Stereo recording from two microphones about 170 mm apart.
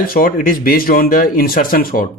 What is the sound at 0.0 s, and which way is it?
Speech, 55° left (ahead or behind).